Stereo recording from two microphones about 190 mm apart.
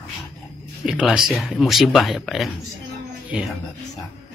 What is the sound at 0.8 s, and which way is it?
Speech, 5° right (ahead or behind).